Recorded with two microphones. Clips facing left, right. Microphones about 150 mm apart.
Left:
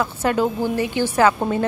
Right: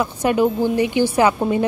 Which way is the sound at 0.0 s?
15° right (ahead or behind).